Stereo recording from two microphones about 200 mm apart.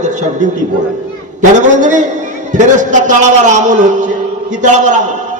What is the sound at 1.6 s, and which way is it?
A man's voice, 35° right (ahead or behind).